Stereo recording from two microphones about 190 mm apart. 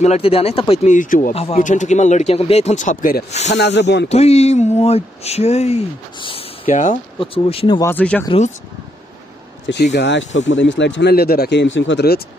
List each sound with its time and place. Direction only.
0.0 s speech: 35° left (ahead or behind)
0.9 s speech: 45° left (ahead or behind)
1.3 s speech: 35° left (ahead or behind)
3.3 s speech: 35° left (ahead or behind)
3.5 s speech: 65° left (ahead or behind)
4.1 s speech: 35° left (ahead or behind)
6.7 s speech: 40° left (ahead or behind)
7.2 s speech: 30° left (ahead or behind)
7.8 s speech: 10° left (ahead or behind)
9.9 s speech: 70° left (ahead or behind)